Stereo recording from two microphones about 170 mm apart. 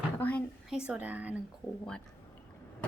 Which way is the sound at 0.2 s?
10° left (ahead or behind).